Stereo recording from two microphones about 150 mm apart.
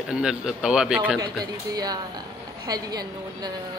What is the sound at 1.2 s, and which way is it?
A woman's voice, 25° right (ahead or behind).